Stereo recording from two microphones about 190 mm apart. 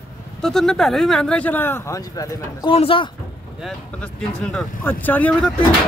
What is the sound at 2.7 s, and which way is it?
Speech, 30° left (ahead or behind).